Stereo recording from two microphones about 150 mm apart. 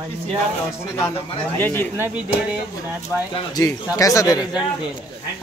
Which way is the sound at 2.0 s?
10° right (ahead or behind).